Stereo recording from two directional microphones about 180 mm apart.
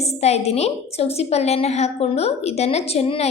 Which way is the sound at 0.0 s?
35° left (ahead or behind).